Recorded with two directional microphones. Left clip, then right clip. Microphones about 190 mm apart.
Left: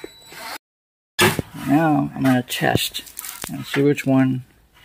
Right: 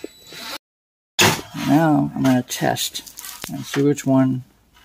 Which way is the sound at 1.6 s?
5° right (ahead or behind).